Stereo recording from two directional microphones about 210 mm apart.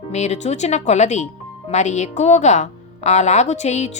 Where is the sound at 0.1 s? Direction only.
30° left (ahead or behind).